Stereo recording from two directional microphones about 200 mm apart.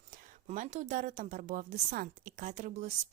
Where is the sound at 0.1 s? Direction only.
40° right (ahead or behind).